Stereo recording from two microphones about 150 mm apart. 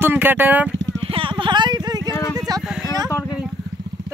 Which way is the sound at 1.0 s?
35° right (ahead or behind).